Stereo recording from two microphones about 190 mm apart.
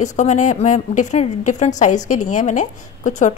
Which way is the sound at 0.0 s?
40° left (ahead or behind).